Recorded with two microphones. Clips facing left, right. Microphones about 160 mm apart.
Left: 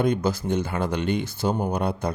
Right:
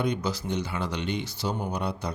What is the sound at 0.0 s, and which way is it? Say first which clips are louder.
Speech: left 5 dB; 50° left (ahead or behind).